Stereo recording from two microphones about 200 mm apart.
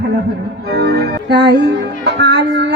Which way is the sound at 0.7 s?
55° right (ahead or behind).